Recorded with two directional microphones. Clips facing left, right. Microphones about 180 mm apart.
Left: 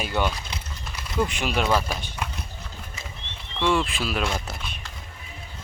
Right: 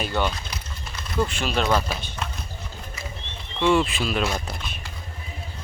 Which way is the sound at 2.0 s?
10° left (ahead or behind).